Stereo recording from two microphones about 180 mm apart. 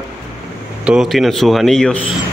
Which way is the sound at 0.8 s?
Centre (ahead or behind).